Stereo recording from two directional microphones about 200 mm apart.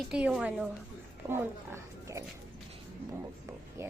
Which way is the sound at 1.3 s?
10° right (ahead or behind).